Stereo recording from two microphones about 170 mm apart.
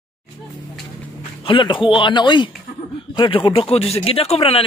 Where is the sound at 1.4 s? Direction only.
30° left (ahead or behind).